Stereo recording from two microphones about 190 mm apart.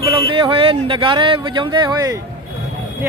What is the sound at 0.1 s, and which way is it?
Speech, 25° right (ahead or behind).